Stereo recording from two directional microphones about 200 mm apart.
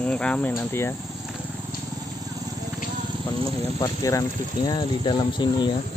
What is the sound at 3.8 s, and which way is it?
Speech, 15° left (ahead or behind).